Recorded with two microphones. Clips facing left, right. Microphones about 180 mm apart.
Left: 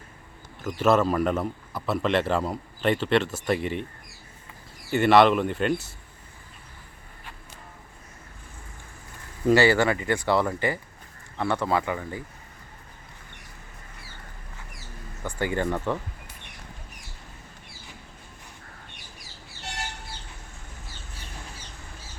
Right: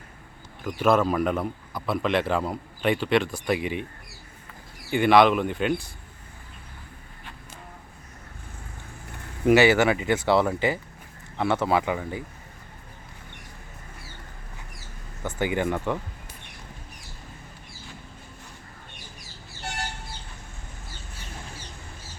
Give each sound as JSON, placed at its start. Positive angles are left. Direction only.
{"t": 0.6, "sound": "a man's voice", "side_deg": -5}
{"t": 4.9, "sound": "a man's voice", "side_deg": -5}
{"t": 9.5, "sound": "speech", "side_deg": -20}
{"t": 11.3, "sound": "speech", "side_deg": -10}
{"t": 15.3, "sound": "speech", "side_deg": -15}